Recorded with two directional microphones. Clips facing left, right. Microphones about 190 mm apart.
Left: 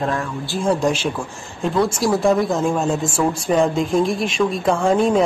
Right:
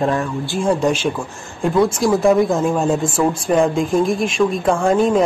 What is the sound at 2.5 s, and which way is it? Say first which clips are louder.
Speech: right 2 dB; 5° right (ahead or behind).